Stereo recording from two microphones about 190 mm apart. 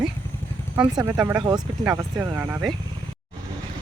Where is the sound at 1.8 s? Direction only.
10° right (ahead or behind).